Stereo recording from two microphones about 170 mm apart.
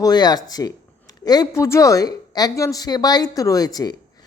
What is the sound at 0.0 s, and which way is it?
A woman's voice, 25° left (ahead or behind).